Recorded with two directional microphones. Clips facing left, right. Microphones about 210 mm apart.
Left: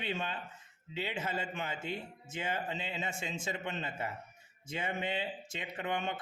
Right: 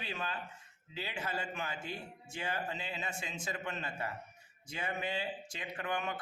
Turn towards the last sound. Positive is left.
turn(degrees=25)  # may be behind; listen again after turning